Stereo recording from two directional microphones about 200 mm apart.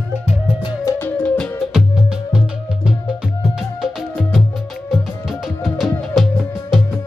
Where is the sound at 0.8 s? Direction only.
10° left (ahead or behind).